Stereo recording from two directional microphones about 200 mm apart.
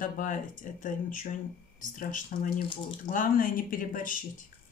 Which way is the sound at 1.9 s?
40° left (ahead or behind).